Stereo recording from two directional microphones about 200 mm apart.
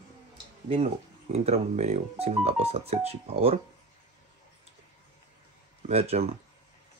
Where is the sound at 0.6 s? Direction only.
30° right (ahead or behind).